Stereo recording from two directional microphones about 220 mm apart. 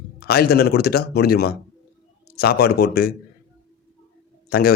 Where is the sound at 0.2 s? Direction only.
45° left (ahead or behind).